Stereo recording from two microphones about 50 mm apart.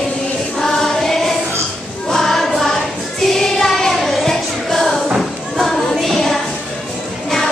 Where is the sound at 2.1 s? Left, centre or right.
Centre.